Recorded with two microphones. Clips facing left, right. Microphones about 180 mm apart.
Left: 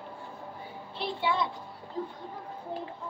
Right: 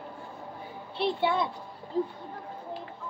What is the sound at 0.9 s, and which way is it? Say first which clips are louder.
Speech: right 3 dB; 55° right (ahead or behind).